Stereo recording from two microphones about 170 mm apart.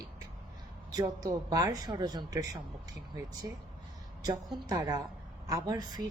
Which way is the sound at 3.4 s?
20° right (ahead or behind).